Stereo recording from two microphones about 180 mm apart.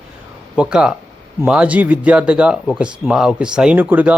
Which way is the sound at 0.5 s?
5° right (ahead or behind).